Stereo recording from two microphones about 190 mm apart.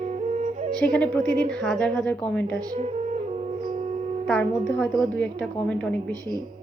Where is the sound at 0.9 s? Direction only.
5° left (ahead or behind).